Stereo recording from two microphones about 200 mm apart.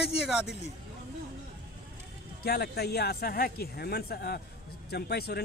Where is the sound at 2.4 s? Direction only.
50° left (ahead or behind).